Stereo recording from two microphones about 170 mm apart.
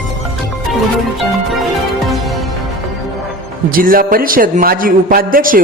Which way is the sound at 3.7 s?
55° right (ahead or behind).